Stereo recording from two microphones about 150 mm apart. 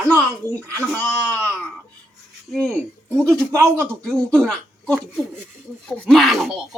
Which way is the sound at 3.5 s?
20° right (ahead or behind).